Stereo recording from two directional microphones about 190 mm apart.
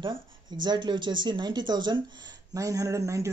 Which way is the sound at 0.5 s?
25° right (ahead or behind).